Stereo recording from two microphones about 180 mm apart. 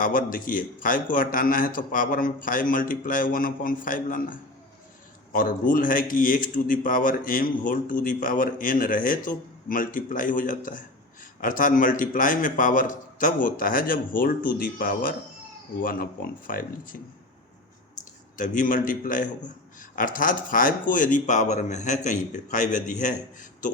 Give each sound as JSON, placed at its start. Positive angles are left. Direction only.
{"t": 0.0, "sound": "a man's voice", "side_deg": 50}
{"t": 18.0, "sound": "a sound", "side_deg": 45}
{"t": 18.3, "sound": "a man's voice", "side_deg": 45}